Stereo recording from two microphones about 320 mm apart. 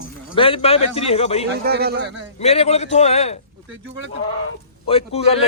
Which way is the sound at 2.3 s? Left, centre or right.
Centre.